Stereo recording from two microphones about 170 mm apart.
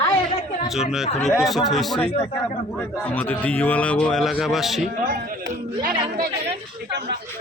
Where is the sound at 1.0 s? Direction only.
40° left (ahead or behind).